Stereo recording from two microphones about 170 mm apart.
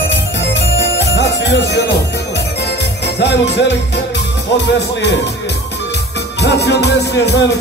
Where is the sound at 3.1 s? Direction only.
85° left.